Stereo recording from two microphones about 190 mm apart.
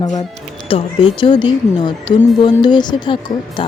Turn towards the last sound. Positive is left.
turn(degrees=25)  # may be behind; listen again after turning